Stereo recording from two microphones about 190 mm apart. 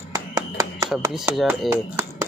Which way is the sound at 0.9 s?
Centre (ahead or behind).